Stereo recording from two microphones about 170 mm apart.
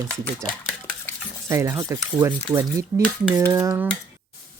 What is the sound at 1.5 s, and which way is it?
Speech, 15° right (ahead or behind).